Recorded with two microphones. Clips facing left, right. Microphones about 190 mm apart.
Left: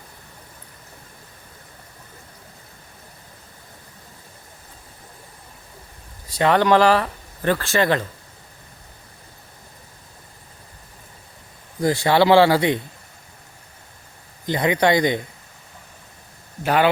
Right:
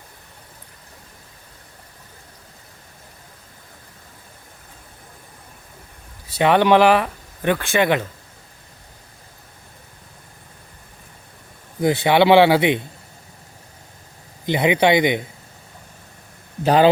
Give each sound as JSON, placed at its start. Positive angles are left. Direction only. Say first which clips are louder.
{"t": 6.4, "sound": "speech", "louder": "right 2 dB", "side_deg": -20}
{"t": 7.5, "sound": "speech", "louder": "right 1 dB", "side_deg": 0}
{"t": 7.8, "sound": "speech", "louder": "right 2 dB", "side_deg": -15}
{"t": 11.9, "sound": "speech", "louder": "right 1 dB", "side_deg": -20}
{"t": 14.4, "sound": "speech", "louder": "right 2 dB", "side_deg": -20}
{"t": 16.6, "sound": "a man's voice", "louder": "right 4 dB", "side_deg": -30}